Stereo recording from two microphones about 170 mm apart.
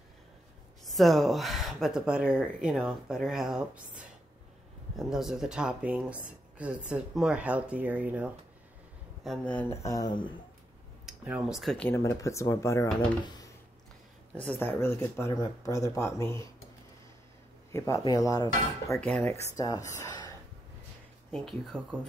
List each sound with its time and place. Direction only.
0.8 s speech: centre (ahead or behind)
4.9 s speech: centre (ahead or behind)
9.2 s speech: 5° left (ahead or behind); by 10.3 s 25° left (ahead or behind)
11.1 s speech: 5° right (ahead or behind)
11.9 s speech: 20° left (ahead or behind)
14.3 s speech: 10° left (ahead or behind)
17.6 s speech: 15° left (ahead or behind)
18.9 s speech: 5° left (ahead or behind)
19.3 s speech: 20° left (ahead or behind)
21.3 s speech: 5° left (ahead or behind)